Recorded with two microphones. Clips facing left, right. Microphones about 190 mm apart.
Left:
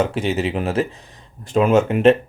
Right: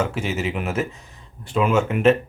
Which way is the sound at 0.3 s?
35° left (ahead or behind).